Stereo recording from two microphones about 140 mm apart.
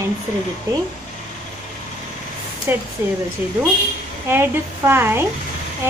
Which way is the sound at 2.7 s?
15° right (ahead or behind).